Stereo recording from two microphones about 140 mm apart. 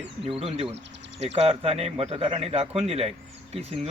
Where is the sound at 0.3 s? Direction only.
40° right (ahead or behind).